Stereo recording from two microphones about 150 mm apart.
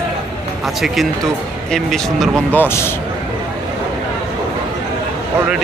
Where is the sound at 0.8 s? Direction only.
Centre (ahead or behind).